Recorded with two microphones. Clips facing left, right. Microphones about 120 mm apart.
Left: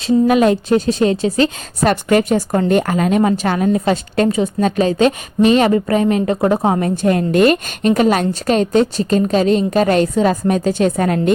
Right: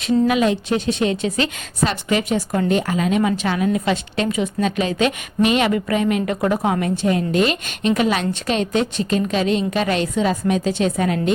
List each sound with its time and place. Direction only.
0.3 s a woman's voice: 45° left (ahead or behind)
1.8 s a woman's voice: 50° left (ahead or behind)